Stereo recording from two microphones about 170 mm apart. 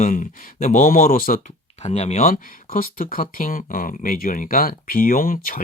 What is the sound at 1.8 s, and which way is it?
Speech, 40° left (ahead or behind).